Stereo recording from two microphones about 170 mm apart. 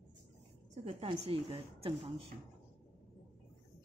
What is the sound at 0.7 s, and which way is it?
Speech, 35° right (ahead or behind).